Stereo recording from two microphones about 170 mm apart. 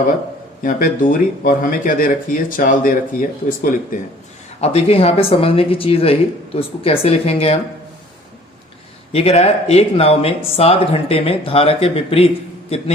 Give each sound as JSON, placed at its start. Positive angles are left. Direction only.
{"t": 0.6, "sound": "speech", "side_deg": 55}
{"t": 4.6, "sound": "speech", "side_deg": 35}
{"t": 9.1, "sound": "speech", "side_deg": 35}